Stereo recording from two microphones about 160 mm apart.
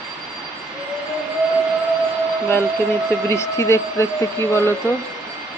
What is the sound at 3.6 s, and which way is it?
Speech, 15° left (ahead or behind).